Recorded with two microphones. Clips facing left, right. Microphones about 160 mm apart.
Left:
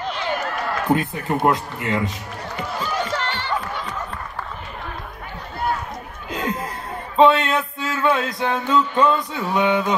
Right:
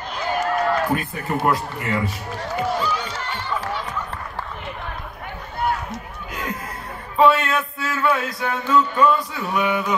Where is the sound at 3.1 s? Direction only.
85° left.